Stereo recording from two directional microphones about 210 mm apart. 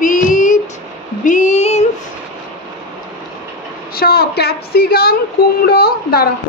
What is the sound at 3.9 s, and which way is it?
A woman's voice, 50° left (ahead or behind).